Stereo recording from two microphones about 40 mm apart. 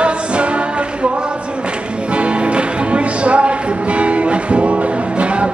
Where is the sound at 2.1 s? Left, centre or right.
Right.